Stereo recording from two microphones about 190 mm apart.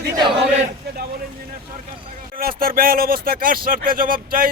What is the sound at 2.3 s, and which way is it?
Speech, 50° right (ahead or behind).